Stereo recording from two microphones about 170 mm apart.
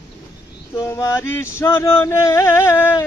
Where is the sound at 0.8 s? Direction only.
15° left (ahead or behind).